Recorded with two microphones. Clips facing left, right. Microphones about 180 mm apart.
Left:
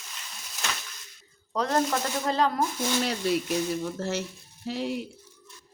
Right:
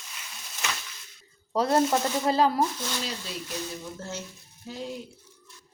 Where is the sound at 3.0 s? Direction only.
65° left (ahead or behind).